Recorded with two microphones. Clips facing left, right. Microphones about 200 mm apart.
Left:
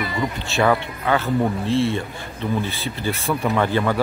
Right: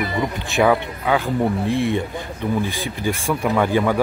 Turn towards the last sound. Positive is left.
turn(degrees=-10)  # may be behind; listen again after turning